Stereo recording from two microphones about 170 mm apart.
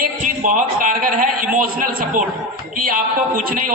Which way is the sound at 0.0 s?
50° right (ahead or behind).